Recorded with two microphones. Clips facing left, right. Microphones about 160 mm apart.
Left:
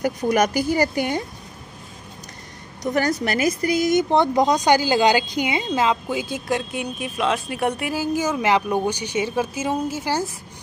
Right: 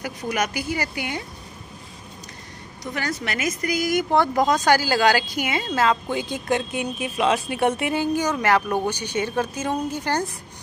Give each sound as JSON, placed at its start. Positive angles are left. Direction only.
{"t": 0.0, "sound": "a woman's voice", "side_deg": 40}
{"t": 2.9, "sound": "speech", "side_deg": 40}